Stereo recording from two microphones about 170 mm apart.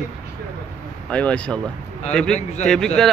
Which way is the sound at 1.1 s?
5° left (ahead or behind).